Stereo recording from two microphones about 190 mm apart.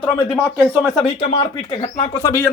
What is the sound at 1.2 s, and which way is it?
Speech, 30° left (ahead or behind).